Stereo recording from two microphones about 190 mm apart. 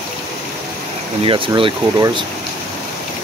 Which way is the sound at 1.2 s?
30° right (ahead or behind).